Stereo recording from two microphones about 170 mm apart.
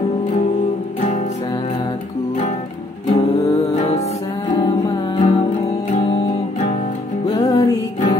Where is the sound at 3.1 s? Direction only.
35° left (ahead or behind).